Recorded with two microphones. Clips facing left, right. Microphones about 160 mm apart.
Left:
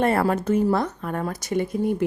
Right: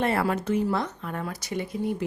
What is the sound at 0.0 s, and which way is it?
A woman's voice, 45° left (ahead or behind).